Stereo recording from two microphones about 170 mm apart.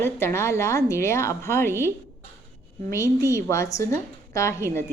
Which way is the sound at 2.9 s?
15° left (ahead or behind).